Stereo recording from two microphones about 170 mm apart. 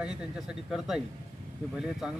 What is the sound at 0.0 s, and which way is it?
Speech, 5° right (ahead or behind).